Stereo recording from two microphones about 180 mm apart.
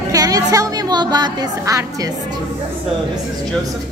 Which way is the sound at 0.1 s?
20° right (ahead or behind).